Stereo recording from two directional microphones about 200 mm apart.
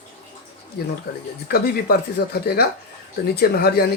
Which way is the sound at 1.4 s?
50° left (ahead or behind).